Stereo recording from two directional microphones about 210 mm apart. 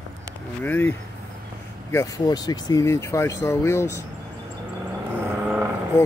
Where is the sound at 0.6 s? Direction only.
10° left (ahead or behind).